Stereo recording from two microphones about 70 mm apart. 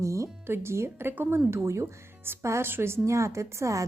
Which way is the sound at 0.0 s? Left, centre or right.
Right.